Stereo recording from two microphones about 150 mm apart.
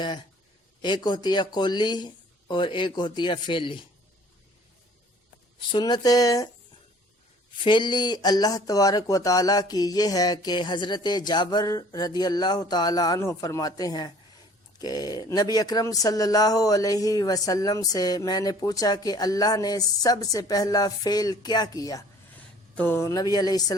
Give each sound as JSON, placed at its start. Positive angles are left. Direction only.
{"t": 0.8, "sound": "speech", "side_deg": 30}
{"t": 5.7, "sound": "speech", "side_deg": 25}
{"t": 7.6, "sound": "speech", "side_deg": 30}
{"t": 22.7, "sound": "speech", "side_deg": 10}